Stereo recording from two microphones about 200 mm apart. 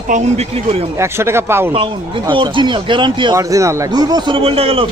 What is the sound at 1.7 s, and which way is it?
Speech, 25° right (ahead or behind).